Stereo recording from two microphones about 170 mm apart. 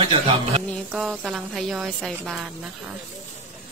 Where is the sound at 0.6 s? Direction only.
Centre (ahead or behind).